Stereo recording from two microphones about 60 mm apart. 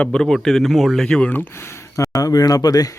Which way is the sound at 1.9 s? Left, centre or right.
Left.